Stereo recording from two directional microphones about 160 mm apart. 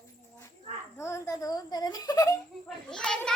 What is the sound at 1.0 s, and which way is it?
Giggle, 15° left (ahead or behind).